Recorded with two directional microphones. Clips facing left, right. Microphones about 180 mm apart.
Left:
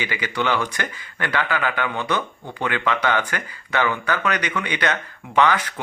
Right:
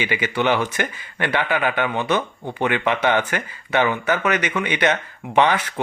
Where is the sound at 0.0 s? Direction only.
20° right (ahead or behind).